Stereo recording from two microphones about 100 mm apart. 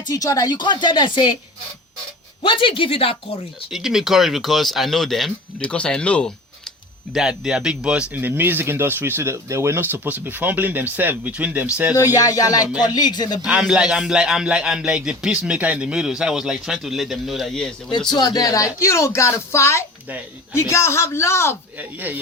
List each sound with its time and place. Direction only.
0.1 s speech: 40° left (ahead or behind)
2.4 s speech: 55° left (ahead or behind)
3.7 s speech: 5° right (ahead or behind)
7.1 s speech: 5° right (ahead or behind)
11.9 s speech: 35° left (ahead or behind)
13.4 s speech: 10° right (ahead or behind); by 17.9 s 5° left (ahead or behind)
18.1 s speech: 40° left (ahead or behind); by 21.5 s 25° left (ahead or behind)
21.8 s speech: 20° right (ahead or behind)